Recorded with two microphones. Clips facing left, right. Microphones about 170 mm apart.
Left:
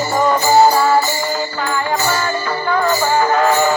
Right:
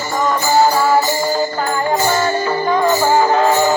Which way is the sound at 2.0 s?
20° right (ahead or behind).